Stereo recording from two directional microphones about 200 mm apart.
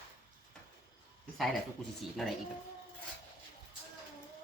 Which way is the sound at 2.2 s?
Centre (ahead or behind).